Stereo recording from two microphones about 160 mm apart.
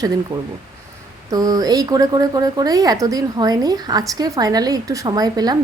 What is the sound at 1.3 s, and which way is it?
Speech, 25° right (ahead or behind).